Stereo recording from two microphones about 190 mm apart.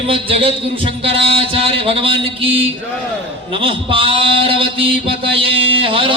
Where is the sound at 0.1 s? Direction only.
30° right (ahead or behind).